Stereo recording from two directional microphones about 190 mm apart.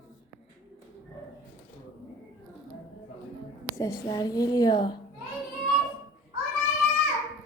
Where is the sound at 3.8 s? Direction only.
20° left (ahead or behind).